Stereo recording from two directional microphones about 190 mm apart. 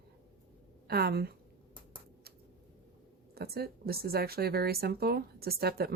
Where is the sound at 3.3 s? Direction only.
55° right (ahead or behind).